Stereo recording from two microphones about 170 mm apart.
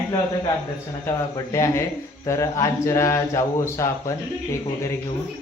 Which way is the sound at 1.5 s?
20° left (ahead or behind).